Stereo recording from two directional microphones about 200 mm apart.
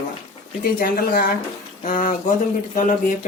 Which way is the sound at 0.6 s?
45° left (ahead or behind).